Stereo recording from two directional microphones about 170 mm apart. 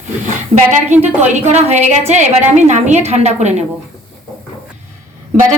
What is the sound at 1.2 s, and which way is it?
Speech, 40° right (ahead or behind).